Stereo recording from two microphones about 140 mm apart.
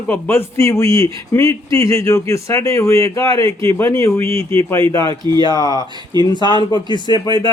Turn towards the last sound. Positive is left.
turn(degrees=30)  # may be behind; listen again after turning